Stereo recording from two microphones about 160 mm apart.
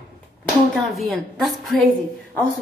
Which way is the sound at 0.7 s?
Centre (ahead or behind).